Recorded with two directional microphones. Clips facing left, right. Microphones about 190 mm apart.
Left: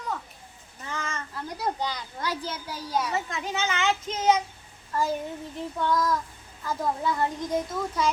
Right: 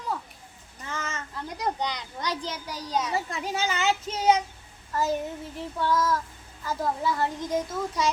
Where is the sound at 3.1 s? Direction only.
35° right (ahead or behind).